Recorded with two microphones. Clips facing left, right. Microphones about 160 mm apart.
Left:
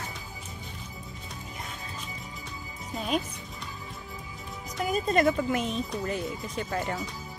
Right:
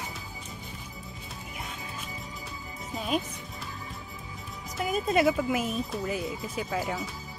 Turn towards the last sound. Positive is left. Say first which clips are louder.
# even
turn(degrees=-5)  # may be behind; listen again after turning